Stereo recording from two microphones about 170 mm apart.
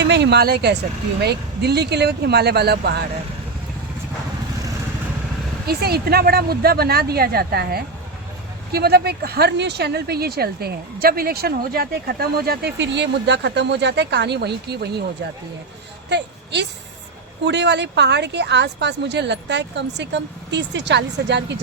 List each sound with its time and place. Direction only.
0.0 s speech: 90° right; by 3.0 s 70° right (ahead or behind)
5.6 s speech: 65° right (ahead or behind)
16.0 s a woman's voice: 90° right